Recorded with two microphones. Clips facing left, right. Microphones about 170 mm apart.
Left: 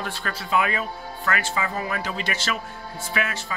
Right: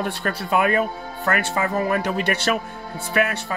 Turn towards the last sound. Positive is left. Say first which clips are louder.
# right 6 dB
turn(degrees=-50)  # may be behind; listen again after turning